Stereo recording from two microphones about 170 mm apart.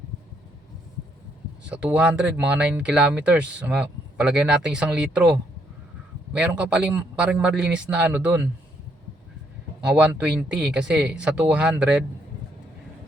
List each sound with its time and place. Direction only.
1.7 s speech: 5° right (ahead or behind)
9.8 s speech: 5° right (ahead or behind)